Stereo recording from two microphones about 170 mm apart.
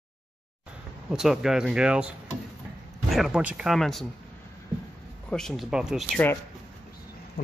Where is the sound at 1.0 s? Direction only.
5° right (ahead or behind).